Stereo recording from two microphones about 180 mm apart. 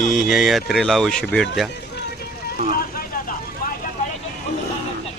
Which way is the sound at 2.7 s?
55° left (ahead or behind).